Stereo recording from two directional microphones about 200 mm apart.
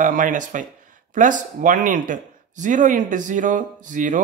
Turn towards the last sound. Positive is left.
turn(degrees=-40)  # may be behind; listen again after turning